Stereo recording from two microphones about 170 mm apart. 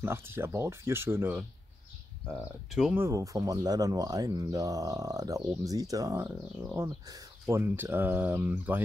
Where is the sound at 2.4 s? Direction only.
5° right (ahead or behind).